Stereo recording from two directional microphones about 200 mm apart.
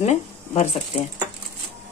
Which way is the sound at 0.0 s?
35° left (ahead or behind).